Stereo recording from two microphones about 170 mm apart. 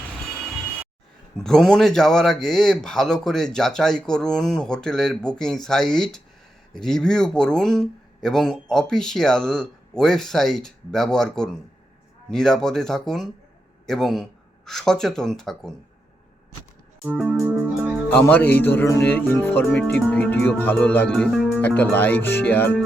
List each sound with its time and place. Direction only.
1.5 s speech: 5° left (ahead or behind)
17.0 s music: 10° right (ahead or behind)
18.1 s speech: 10° left (ahead or behind)
21.8 s speech: 10° left (ahead or behind)